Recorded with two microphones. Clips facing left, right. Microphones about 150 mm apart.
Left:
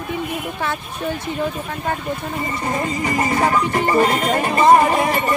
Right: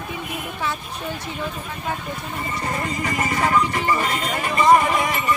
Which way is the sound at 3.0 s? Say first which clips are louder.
Left 4 dB; 30° left (ahead or behind).